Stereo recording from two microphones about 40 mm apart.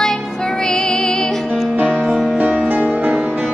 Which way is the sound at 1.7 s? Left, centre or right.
Right.